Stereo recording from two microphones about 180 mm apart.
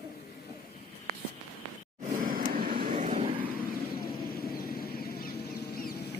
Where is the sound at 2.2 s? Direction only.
55° right (ahead or behind).